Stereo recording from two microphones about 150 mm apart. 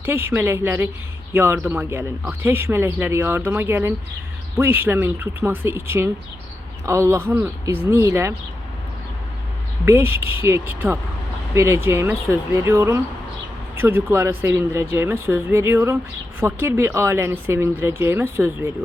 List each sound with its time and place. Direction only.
0.0 s speech: 15° right (ahead or behind)
9.8 s speech: 15° right (ahead or behind)